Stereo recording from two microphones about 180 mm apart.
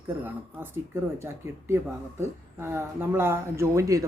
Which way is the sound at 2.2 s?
15° right (ahead or behind).